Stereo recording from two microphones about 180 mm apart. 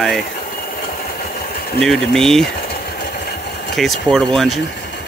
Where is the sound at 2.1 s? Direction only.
Centre (ahead or behind).